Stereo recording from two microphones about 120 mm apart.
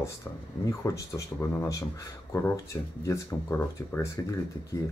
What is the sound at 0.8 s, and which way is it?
Speech, 20° left (ahead or behind).